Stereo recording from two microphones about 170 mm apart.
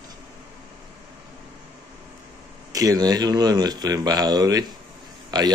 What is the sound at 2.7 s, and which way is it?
Speech, 20° right (ahead or behind).